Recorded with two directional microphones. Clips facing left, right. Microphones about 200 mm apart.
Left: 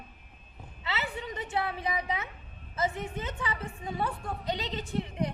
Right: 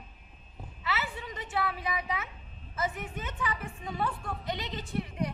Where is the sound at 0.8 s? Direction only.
25° left (ahead or behind).